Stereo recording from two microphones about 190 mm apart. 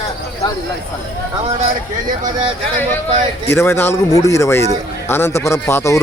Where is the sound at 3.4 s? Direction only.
15° left (ahead or behind).